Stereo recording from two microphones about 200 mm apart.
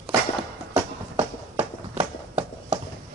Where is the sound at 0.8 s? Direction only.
30° right (ahead or behind).